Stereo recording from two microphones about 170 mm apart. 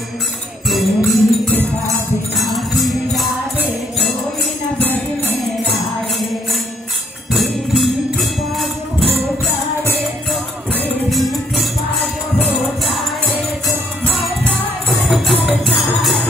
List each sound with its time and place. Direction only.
0.7 s music: centre (ahead or behind)
10.7 s music: 5° left (ahead or behind)
14.0 s music: 5° left (ahead or behind)